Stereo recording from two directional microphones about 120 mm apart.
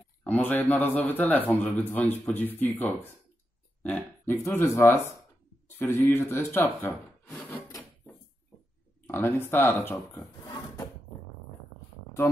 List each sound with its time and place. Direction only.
0.2 s speech: 15° left (ahead or behind)
9.0 s speech: 20° left (ahead or behind)